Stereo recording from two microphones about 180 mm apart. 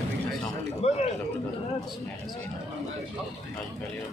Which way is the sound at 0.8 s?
40° left (ahead or behind).